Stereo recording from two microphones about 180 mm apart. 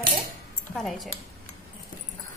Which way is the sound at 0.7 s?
Centre (ahead or behind).